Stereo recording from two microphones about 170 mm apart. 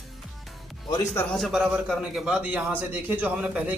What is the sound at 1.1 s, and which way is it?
A man's voice, 5° left (ahead or behind).